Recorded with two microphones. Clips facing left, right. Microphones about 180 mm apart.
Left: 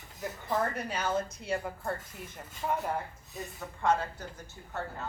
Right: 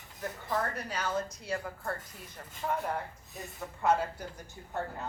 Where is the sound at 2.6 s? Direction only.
5° left (ahead or behind).